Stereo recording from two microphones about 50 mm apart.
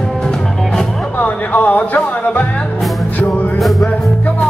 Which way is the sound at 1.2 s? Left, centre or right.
Left.